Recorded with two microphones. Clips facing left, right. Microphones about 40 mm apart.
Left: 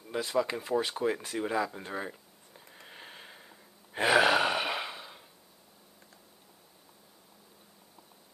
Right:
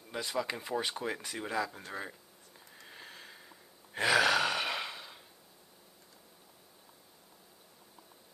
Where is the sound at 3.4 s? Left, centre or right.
Centre.